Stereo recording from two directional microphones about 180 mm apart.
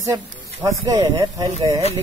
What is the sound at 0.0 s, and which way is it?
Speech, 20° right (ahead or behind).